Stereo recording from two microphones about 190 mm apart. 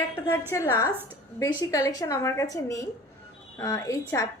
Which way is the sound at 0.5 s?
15° left (ahead or behind).